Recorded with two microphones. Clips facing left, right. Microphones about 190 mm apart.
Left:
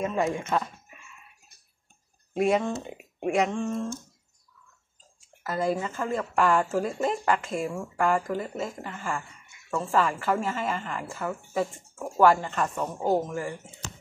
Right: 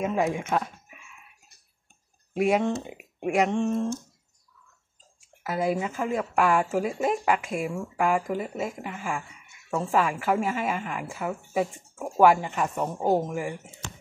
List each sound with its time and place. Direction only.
0.0 s speech: 5° right (ahead or behind)
2.3 s speech: 5° right (ahead or behind)
3.3 s a sound: 5° right (ahead or behind)
3.5 s speech: 20° right (ahead or behind)
5.4 s speech: 10° right (ahead or behind)